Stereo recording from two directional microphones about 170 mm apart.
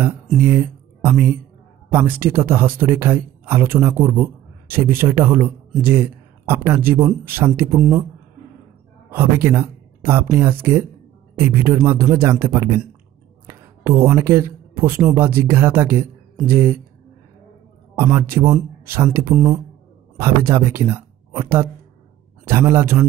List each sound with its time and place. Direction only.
0.4 s speech: 15° right (ahead or behind)
9.1 s speech: 15° right (ahead or behind)
13.5 s a sound: 15° right (ahead or behind)
15.1 s speech: 15° right (ahead or behind)
17.9 s speech: 15° right (ahead or behind)